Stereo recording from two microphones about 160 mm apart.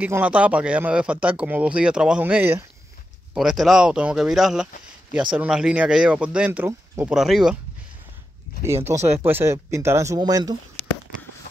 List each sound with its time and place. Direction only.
0.0 s speech: 10° right (ahead or behind)
3.3 s speech: centre (ahead or behind)
8.6 s speech: 15° right (ahead or behind)